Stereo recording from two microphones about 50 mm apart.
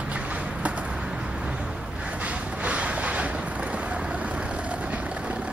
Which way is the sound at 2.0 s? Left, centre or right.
Right.